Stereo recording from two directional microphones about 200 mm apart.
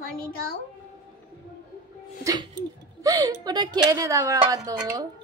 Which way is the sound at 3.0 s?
20° right (ahead or behind).